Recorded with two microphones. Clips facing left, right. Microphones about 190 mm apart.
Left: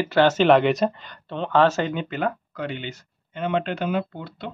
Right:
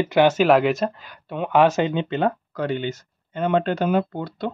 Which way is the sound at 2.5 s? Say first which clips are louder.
Right 6 dB; 40° right (ahead or behind).